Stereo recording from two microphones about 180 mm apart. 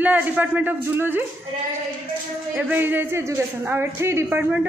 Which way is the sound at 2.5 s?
10° right (ahead or behind).